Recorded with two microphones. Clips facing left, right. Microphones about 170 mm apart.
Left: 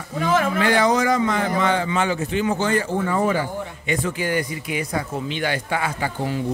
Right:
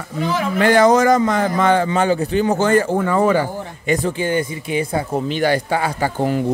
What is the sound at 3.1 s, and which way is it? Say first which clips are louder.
Speech: right 4 dB; 80° right.